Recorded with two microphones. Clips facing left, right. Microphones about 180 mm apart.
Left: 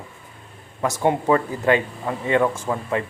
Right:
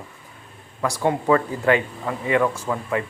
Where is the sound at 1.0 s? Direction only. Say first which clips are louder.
Even; 25° left (ahead or behind).